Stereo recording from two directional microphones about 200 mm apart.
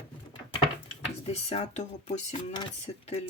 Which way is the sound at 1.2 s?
30° left (ahead or behind).